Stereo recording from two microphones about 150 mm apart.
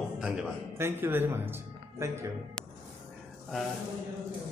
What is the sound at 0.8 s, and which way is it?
A man's voice, 15° right (ahead or behind).